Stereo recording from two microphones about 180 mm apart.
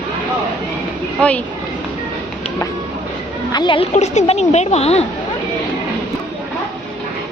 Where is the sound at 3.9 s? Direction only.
40° left (ahead or behind).